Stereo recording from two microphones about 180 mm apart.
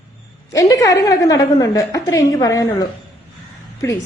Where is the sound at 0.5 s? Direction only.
20° left (ahead or behind).